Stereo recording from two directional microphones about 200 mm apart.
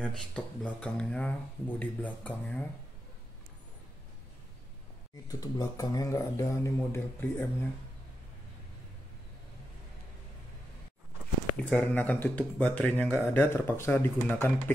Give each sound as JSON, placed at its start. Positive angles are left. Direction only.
{"t": 0.0, "sound": "speech", "side_deg": 5}
{"t": 5.3, "sound": "speech", "side_deg": 20}
{"t": 11.7, "sound": "speech", "side_deg": 10}